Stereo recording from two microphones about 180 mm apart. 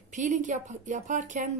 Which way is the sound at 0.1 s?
45° right (ahead or behind).